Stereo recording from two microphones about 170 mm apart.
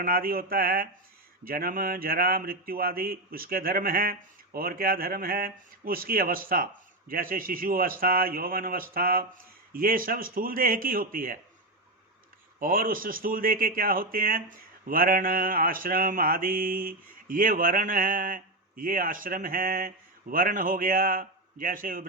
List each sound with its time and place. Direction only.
0.0 s speech: 60° right (ahead or behind)
12.5 s a man's voice: 55° right (ahead or behind)